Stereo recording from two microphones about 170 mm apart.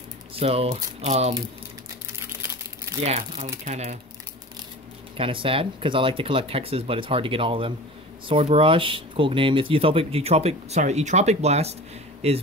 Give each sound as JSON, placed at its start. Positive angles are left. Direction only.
{"t": 0.4, "sound": "speech", "side_deg": -35}
{"t": 2.4, "sound": "crumpling", "side_deg": -15}
{"t": 3.6, "sound": "speech", "side_deg": -40}
{"t": 5.1, "sound": "speech", "side_deg": -30}